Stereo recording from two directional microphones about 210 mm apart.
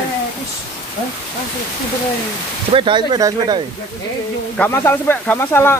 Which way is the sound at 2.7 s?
25° right (ahead or behind).